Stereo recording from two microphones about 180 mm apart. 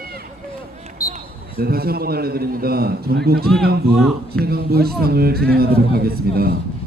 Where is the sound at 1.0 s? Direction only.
20° left (ahead or behind).